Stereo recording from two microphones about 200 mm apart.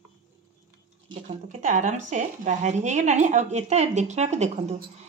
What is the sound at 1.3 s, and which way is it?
Speech, 40° right (ahead or behind).